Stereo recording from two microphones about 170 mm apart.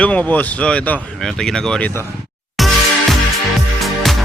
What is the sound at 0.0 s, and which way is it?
Speech, 10° left (ahead or behind).